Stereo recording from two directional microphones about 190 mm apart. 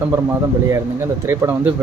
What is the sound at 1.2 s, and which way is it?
Speech, 15° right (ahead or behind).